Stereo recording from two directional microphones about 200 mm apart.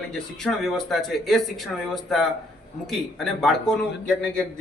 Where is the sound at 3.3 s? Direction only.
Centre (ahead or behind).